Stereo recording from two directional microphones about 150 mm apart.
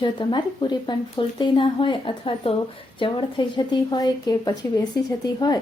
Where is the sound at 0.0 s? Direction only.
30° left (ahead or behind).